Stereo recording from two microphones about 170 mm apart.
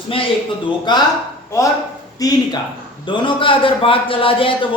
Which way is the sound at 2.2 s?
20° left (ahead or behind).